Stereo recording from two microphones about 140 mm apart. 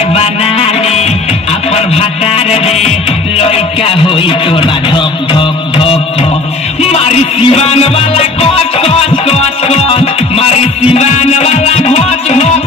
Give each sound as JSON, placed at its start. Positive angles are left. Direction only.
{"t": 0.1, "sound": "music", "side_deg": 45}
{"t": 3.3, "sound": "speech", "side_deg": 45}
{"t": 6.9, "sound": "music", "side_deg": 45}